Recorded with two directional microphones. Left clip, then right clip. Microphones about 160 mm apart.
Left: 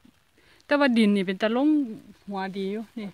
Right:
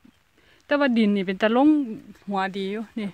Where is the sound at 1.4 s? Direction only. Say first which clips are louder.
Right 6 dB; 20° right (ahead or behind).